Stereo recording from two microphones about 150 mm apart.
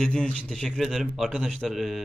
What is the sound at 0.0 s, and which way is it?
A man's voice, 5° left (ahead or behind).